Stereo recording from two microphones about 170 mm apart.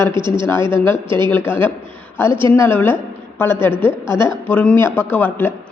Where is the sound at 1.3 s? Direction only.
15° left (ahead or behind).